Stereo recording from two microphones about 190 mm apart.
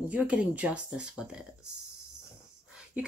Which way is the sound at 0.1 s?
5° right (ahead or behind).